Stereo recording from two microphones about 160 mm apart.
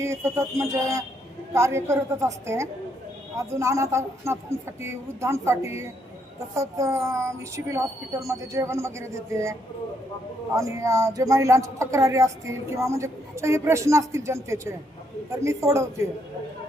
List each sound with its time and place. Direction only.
0.0 s speech: 20° right (ahead or behind)